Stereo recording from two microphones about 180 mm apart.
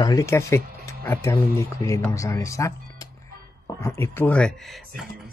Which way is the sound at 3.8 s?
15° left (ahead or behind).